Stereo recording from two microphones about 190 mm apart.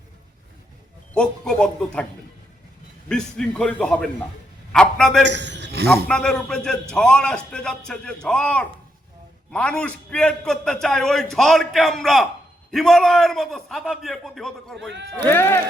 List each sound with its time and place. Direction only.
1.1 s a man's voice: 5° left (ahead or behind)
3.1 s a man's voice: 5° left (ahead or behind)
5.2 s a man's voice: 65° right (ahead or behind)
6.1 s a man's voice: 5° left (ahead or behind)